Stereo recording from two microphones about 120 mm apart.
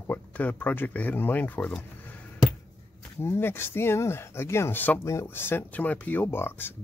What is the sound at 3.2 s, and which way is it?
Speech, 20° left (ahead or behind).